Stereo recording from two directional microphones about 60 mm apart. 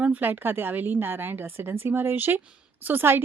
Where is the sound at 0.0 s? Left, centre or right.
Right.